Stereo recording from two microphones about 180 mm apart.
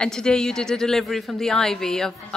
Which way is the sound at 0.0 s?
5° left (ahead or behind).